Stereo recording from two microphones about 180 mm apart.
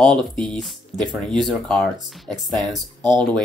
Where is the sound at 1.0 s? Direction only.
25° right (ahead or behind).